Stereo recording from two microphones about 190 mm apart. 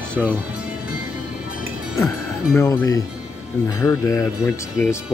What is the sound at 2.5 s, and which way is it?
Speech, 15° left (ahead or behind).